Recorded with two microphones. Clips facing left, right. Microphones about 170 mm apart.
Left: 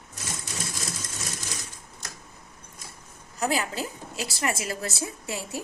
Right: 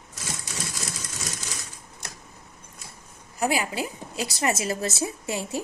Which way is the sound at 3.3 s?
15° right (ahead or behind).